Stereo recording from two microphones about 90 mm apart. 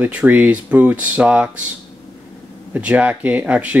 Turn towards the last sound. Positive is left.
turn(degrees=-15)  # may be behind; listen again after turning